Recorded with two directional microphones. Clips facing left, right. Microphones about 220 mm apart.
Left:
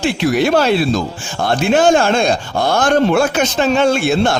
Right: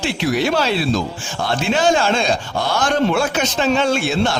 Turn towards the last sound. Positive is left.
turn(degrees=50)  # may be behind; listen again after turning